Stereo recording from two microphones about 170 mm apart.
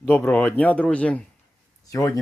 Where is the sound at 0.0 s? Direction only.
10° left (ahead or behind).